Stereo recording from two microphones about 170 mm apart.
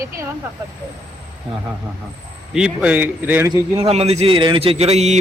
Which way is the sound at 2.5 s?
5° right (ahead or behind).